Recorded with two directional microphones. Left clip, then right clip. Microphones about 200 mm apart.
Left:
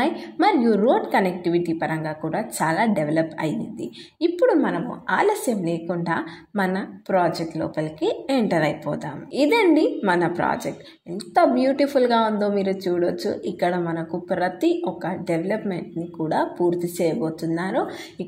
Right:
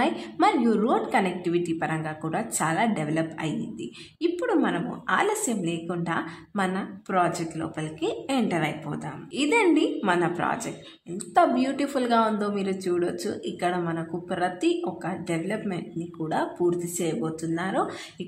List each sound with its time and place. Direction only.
0.0 s a woman's voice: 20° left (ahead or behind)